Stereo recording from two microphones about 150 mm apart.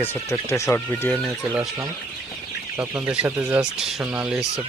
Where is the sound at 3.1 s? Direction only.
10° right (ahead or behind).